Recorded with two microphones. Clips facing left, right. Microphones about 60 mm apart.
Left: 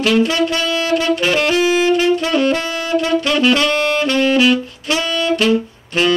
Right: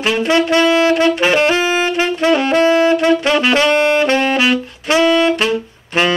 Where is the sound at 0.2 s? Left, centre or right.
Right.